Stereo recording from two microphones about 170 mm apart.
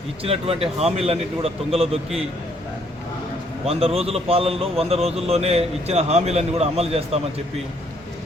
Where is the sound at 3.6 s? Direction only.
35° right (ahead or behind).